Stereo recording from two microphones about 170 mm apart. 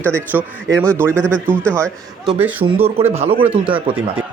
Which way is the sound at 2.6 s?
35° right (ahead or behind).